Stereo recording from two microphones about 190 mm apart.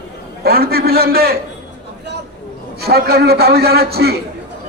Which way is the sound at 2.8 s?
55° right (ahead or behind).